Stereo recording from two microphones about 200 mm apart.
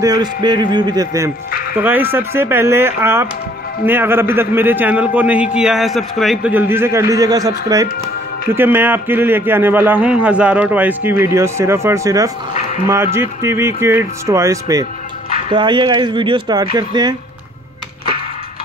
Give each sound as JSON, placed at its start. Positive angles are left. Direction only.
{"t": 0.0, "sound": "a man's voice", "side_deg": -20}